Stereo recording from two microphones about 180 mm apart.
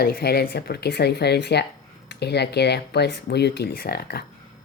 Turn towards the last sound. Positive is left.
turn(degrees=60)  # may be behind; listen again after turning